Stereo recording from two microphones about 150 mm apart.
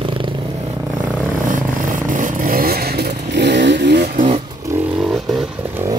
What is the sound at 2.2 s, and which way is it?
Motorcycle, 70° right (ahead or behind).